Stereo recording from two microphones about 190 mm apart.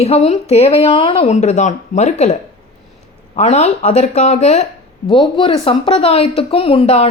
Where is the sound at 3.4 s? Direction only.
35° left (ahead or behind).